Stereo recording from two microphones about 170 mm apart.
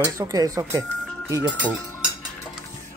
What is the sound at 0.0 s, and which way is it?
Speech, 20° right (ahead or behind).